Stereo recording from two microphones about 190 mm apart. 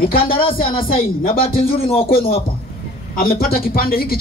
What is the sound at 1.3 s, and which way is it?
Speech, 50° left (ahead or behind).